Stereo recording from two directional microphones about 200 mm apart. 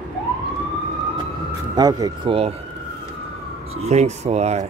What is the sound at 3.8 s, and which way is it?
Speech, 35° right (ahead or behind).